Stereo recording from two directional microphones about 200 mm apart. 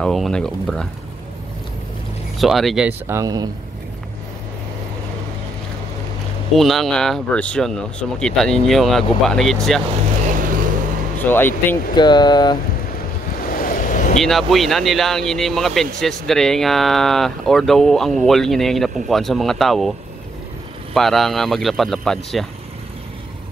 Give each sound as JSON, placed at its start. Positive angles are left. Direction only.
{"t": 0.0, "sound": "speech", "side_deg": 0}
{"t": 2.3, "sound": "speech", "side_deg": 0}
{"t": 6.5, "sound": "speech", "side_deg": 0}
{"t": 10.2, "sound": "vehicle", "side_deg": -40}
{"t": 11.2, "sound": "speech", "side_deg": 10}
{"t": 11.9, "sound": "speech", "side_deg": 20}
{"t": 13.4, "sound": "vehicle", "side_deg": 45}
{"t": 14.2, "sound": "speech", "side_deg": 0}
{"t": 20.9, "sound": "speech", "side_deg": 0}